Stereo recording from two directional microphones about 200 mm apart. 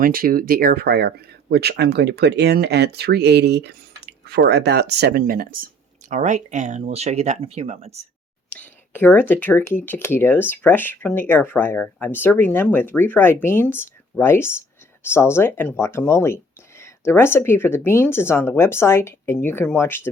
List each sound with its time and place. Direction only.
0.0 s speech: 45° right (ahead or behind)
8.4 s speech: 10° left (ahead or behind)